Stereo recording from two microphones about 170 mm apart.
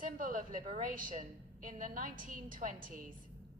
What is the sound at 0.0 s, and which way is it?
A woman's voice, 50° right (ahead or behind).